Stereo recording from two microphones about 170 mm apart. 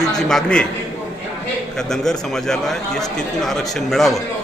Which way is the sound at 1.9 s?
5° left (ahead or behind).